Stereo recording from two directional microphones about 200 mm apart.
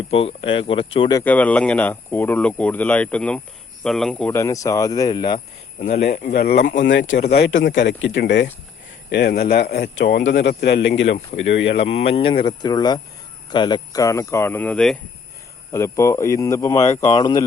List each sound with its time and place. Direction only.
0.1 s speech: 30° left (ahead or behind)
1.2 s speech: 10° left (ahead or behind)
5.8 s speech: 35° left (ahead or behind)
6.3 s speech: 50° left (ahead or behind)
11.9 s speech: 30° left (ahead or behind)